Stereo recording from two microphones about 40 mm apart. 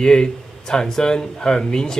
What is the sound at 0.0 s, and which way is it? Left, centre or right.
A man's voice, centre.